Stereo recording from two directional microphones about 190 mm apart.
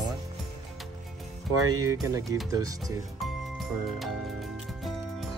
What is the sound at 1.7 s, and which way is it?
Speech, 20° right (ahead or behind).